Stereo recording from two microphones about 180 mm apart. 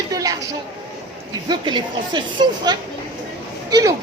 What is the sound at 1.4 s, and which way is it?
Speech, 25° right (ahead or behind).